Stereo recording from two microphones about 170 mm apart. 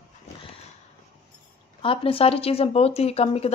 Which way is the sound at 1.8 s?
30° left (ahead or behind).